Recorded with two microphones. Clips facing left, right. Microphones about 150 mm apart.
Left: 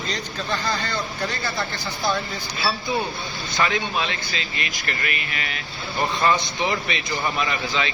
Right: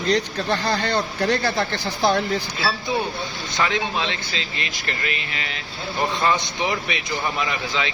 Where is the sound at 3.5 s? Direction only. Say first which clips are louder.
Even; 20° right (ahead or behind).